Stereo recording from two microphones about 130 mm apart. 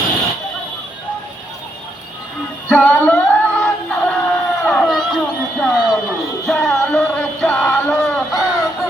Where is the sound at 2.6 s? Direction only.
10° left (ahead or behind).